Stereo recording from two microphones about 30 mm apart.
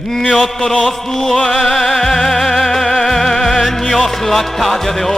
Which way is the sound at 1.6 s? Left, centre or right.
Centre.